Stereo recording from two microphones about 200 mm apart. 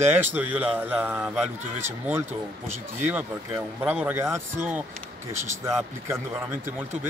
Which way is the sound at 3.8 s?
10° right (ahead or behind).